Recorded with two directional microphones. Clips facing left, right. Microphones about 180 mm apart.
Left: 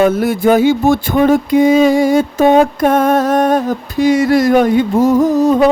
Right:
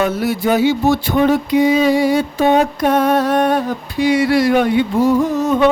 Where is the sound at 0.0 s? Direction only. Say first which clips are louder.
Left 5 dB; 50° left (ahead or behind).